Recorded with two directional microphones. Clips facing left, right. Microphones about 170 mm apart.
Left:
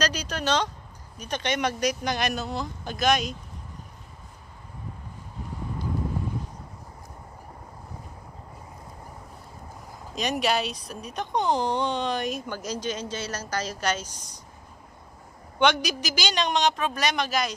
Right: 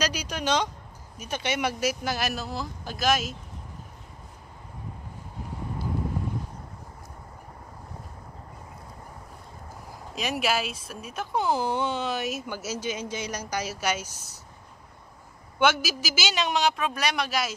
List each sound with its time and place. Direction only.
0.0 s speech: 10° right (ahead or behind)
10.1 s speech: centre (ahead or behind)
15.6 s speech: 5° right (ahead or behind)